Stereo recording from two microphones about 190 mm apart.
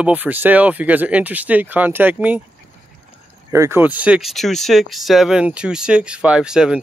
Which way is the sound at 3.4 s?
15° right (ahead or behind).